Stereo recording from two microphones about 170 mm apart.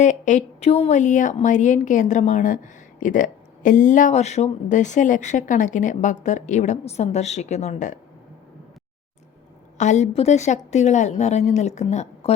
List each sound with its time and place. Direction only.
0.0 s speech: 45° left (ahead or behind)
9.7 s speech: 45° left (ahead or behind)